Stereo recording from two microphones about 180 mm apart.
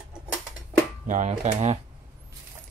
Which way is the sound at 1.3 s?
40° right (ahead or behind).